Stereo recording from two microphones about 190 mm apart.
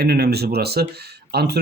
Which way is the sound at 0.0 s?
60° right (ahead or behind).